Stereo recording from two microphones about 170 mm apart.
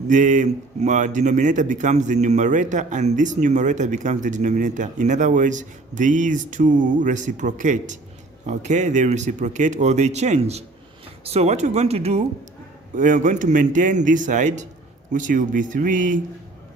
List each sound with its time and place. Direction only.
0.1 s a man's voice: 50° right (ahead or behind)
13.0 s a man's voice: 50° right (ahead or behind)